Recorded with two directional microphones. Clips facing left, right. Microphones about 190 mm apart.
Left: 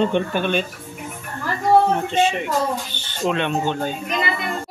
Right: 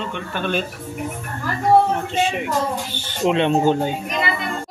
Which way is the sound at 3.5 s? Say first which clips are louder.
Right 6 dB; 40° right (ahead or behind).